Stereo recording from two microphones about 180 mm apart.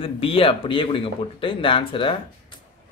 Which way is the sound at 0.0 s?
30° left (ahead or behind).